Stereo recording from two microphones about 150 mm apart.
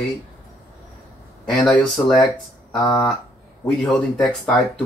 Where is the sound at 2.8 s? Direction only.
25° left (ahead or behind).